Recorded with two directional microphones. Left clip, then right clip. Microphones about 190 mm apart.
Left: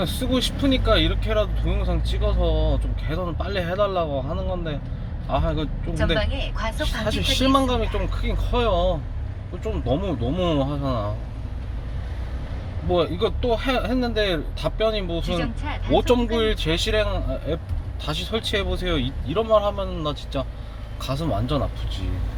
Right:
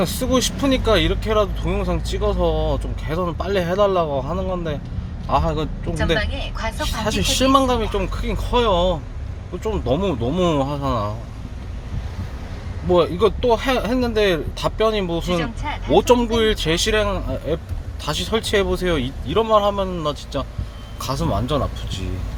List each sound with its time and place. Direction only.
0.0 s speech: 35° right (ahead or behind)
7.0 s speech: 30° right (ahead or behind)
12.9 s speech: 30° right (ahead or behind)